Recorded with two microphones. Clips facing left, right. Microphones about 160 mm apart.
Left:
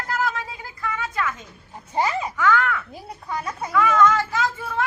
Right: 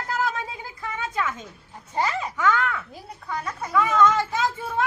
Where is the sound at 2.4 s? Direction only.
20° right (ahead or behind).